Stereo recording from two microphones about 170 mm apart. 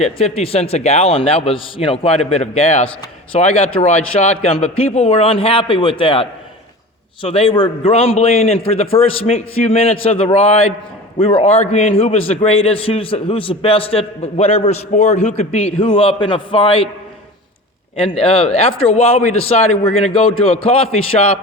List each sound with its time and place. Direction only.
0.0 s a man's voice: 35° left (ahead or behind)
18.2 s a man's voice: 35° left (ahead or behind)